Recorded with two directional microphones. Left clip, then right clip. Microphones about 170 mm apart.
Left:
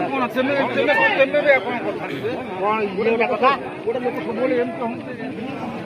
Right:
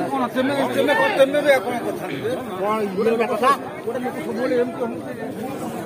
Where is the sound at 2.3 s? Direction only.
90° right.